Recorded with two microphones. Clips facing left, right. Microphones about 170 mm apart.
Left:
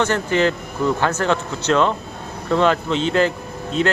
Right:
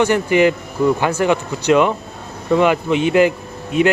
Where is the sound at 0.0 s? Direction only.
15° right (ahead or behind).